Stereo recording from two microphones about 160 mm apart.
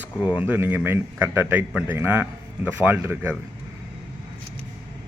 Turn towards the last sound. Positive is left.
turn(degrees=-10)  # may be behind; listen again after turning